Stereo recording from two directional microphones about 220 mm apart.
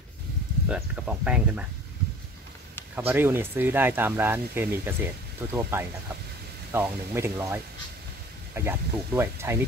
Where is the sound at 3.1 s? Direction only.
10° right (ahead or behind).